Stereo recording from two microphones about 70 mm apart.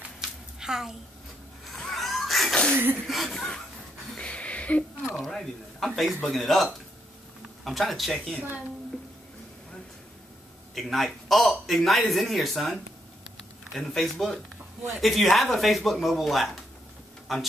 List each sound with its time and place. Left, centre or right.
0.6 s a woman's voice: centre
1.8 s a sound: centre
2.7 s speech: right
3.1 s a man's voice: centre
4.2 s a sound: centre
5.2 s a man's voice: centre
10.7 s a man's voice: centre